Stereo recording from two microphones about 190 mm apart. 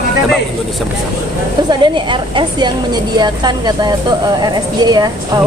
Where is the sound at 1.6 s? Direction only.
25° right (ahead or behind).